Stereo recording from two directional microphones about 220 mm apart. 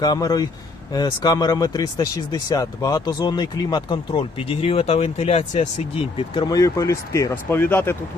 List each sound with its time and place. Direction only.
0.0 s speech: 15° left (ahead or behind)